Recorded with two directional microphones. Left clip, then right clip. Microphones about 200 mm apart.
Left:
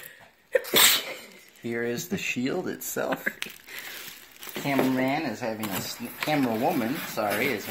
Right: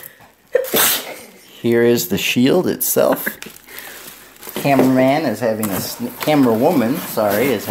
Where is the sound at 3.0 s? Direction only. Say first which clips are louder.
Right 11 dB; 15° left (ahead or behind).